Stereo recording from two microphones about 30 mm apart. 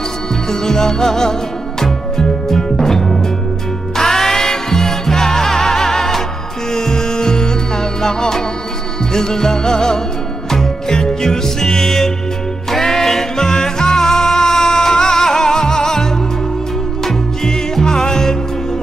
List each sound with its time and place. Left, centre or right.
0.5 s music: centre